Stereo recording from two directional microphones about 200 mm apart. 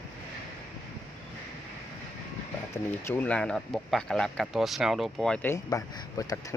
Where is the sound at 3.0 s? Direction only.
10° left (ahead or behind).